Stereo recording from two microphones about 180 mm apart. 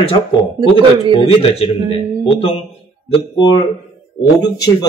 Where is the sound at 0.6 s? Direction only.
25° right (ahead or behind).